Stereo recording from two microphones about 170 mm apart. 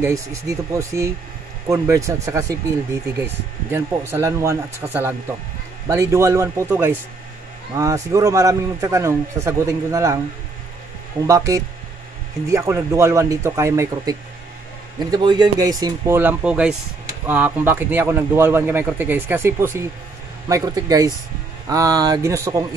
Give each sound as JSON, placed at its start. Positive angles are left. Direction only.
{"t": 0.0, "sound": "speech", "side_deg": -15}
{"t": 3.7, "sound": "speech", "side_deg": -15}
{"t": 11.1, "sound": "speech", "side_deg": -20}
{"t": 16.2, "sound": "speech", "side_deg": -10}